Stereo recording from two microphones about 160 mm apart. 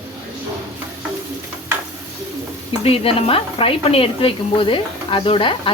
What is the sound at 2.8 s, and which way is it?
Speech, 35° left (ahead or behind).